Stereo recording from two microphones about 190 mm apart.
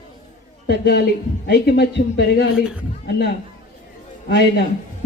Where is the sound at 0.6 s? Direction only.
60° left (ahead or behind).